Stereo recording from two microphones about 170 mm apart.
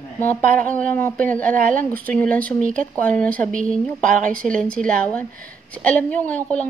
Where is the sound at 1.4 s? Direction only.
50° right (ahead or behind).